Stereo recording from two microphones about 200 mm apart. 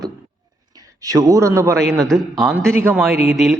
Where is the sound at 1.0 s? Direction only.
15° right (ahead or behind).